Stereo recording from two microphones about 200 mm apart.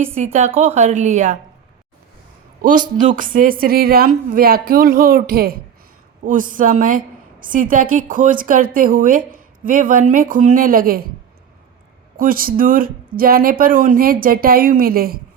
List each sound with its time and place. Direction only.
0.3 s a woman's voice: 35° right (ahead or behind)
2.6 s a woman's voice: 45° right (ahead or behind)
12.1 s a woman's voice: 45° right (ahead or behind)